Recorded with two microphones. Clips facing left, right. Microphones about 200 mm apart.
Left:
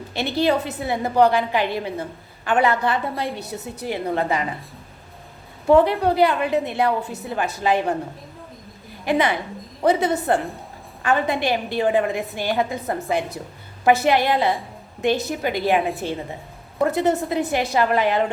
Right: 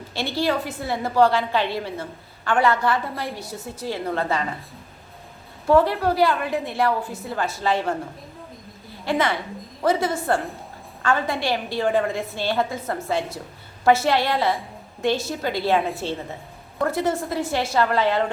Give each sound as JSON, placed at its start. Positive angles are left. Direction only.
{"t": 0.1, "sound": "a woman's voice", "side_deg": 20}
{"t": 5.6, "sound": "a woman's voice", "side_deg": 20}
{"t": 9.0, "sound": "a woman's voice", "side_deg": 15}